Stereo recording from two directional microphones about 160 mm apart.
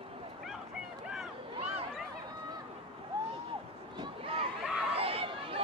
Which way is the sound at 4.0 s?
35° right (ahead or behind).